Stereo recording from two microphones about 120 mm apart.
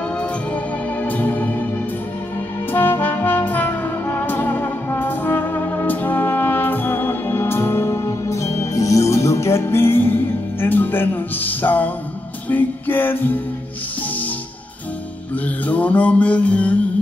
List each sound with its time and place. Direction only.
1.0 s music: 15° left (ahead or behind)
2.7 s brass instrument: 15° left (ahead or behind)
12.4 s music: 15° left (ahead or behind)
15.4 s mantra: 15° left (ahead or behind)